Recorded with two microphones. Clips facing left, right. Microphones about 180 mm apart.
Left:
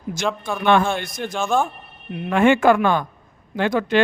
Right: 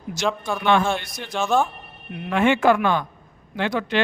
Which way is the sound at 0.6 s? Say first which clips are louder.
Left 2 dB; 55° left (ahead or behind).